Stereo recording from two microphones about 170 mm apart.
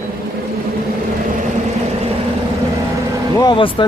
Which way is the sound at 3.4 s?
25° left (ahead or behind).